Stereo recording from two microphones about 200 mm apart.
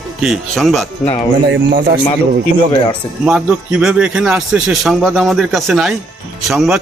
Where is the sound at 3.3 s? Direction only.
5° right (ahead or behind).